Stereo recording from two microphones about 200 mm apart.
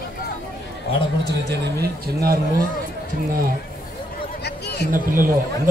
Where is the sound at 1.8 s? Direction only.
50° right (ahead or behind).